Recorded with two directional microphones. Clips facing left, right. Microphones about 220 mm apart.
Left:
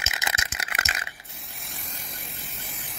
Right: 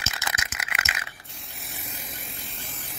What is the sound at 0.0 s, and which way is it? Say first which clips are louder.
Rattle: even; 20° left (ahead or behind).